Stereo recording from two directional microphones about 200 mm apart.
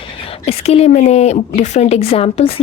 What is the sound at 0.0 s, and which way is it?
A woman's voice, 30° left (ahead or behind).